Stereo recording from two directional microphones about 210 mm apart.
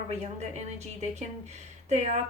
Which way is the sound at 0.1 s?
30° right (ahead or behind).